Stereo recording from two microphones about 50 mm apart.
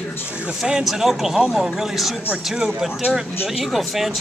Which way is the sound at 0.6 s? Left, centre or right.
Centre.